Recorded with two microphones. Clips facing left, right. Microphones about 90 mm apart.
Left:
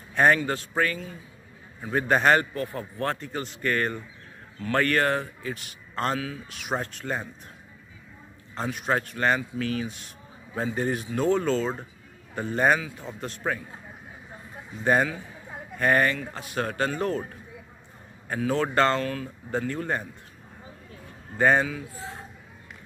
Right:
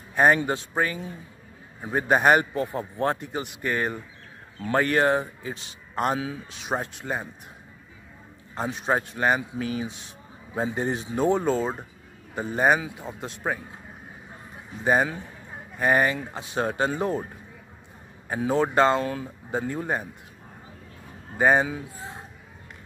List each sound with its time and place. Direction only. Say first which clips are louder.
0.1 s a man's voice: right 1 dB; 15° right (ahead or behind)
8.5 s a man's voice: right 1 dB; 20° right (ahead or behind)
14.8 s a man's voice: right 1 dB; 10° right (ahead or behind)
18.3 s a man's voice: right 2 dB; 15° right (ahead or behind)
21.4 s a man's voice: right 1 dB; 15° right (ahead or behind)